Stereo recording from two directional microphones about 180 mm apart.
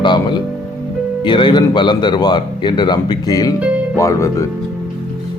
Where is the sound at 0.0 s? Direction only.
25° left (ahead or behind).